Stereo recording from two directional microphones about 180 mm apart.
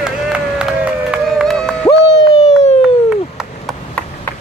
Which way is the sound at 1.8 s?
20° left (ahead or behind).